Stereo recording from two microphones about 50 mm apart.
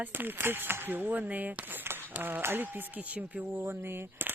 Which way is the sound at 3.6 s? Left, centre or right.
Right.